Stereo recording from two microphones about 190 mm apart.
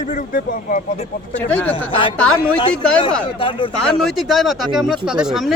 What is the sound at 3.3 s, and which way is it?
Speech, 25° left (ahead or behind).